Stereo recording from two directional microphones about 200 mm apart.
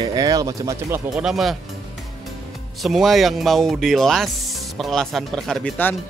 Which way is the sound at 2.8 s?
Centre (ahead or behind).